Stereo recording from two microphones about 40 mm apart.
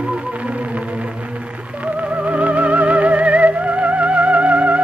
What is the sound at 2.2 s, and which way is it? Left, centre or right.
Music, right.